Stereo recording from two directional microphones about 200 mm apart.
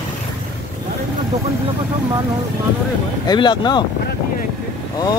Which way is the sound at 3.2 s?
20° left (ahead or behind).